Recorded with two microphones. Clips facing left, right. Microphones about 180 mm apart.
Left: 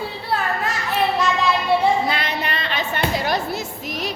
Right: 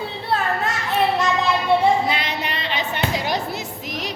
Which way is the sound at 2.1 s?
20° right (ahead or behind).